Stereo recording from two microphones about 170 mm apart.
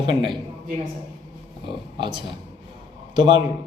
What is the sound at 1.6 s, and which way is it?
A man's voice, 30° right (ahead or behind).